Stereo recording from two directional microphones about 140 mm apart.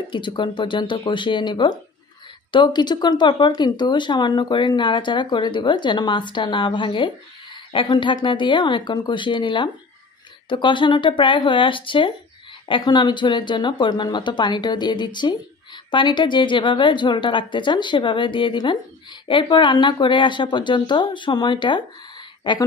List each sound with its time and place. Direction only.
0.1 s speech: 35° left (ahead or behind)